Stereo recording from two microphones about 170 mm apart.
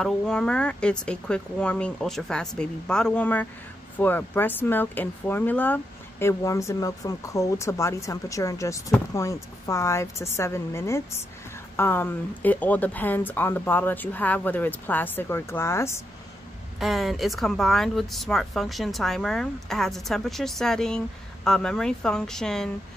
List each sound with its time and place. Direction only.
0.0 s speech: 5° left (ahead or behind)
16.8 s speech: centre (ahead or behind)